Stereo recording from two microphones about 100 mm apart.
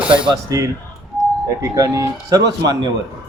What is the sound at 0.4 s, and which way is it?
Speech, 35° right (ahead or behind).